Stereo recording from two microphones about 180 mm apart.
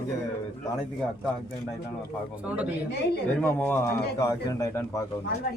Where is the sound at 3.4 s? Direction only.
10° left (ahead or behind).